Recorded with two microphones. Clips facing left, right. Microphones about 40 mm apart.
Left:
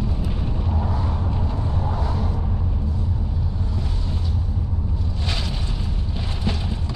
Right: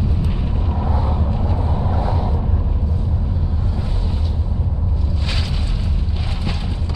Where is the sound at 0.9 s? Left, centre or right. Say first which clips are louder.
Right 4 dB; centre.